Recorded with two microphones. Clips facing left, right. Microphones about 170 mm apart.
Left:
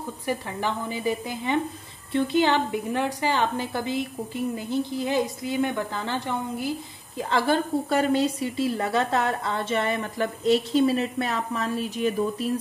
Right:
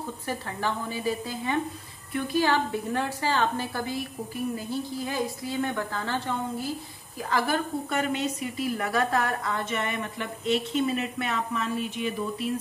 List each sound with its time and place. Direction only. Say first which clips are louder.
0.3 s a woman's voice: left 3 dB; 15° left (ahead or behind); by 12.4 s 40° left (ahead or behind)